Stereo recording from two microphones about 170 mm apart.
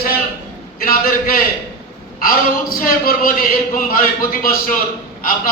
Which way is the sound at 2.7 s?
55° left (ahead or behind).